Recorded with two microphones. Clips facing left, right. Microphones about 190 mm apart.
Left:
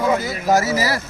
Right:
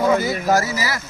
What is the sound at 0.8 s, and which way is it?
Speech, 35° left (ahead or behind).